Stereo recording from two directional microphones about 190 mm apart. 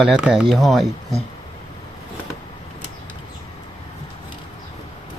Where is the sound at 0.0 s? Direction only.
5° right (ahead or behind).